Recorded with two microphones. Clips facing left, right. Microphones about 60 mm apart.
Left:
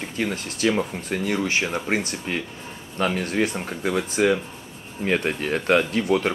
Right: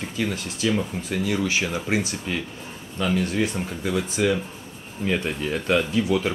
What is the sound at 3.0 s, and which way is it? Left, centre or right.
Speech, left.